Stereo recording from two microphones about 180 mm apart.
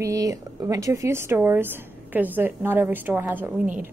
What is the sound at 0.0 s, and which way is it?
A woman's voice, 20° right (ahead or behind).